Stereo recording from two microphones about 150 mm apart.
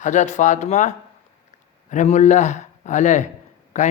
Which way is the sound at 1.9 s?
50° left (ahead or behind).